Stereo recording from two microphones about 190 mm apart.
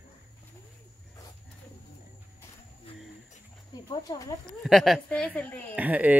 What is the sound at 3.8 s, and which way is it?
Speech, 20° left (ahead or behind).